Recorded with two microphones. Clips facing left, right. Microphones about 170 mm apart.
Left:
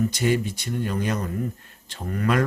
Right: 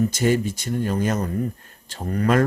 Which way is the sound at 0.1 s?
45° right (ahead or behind).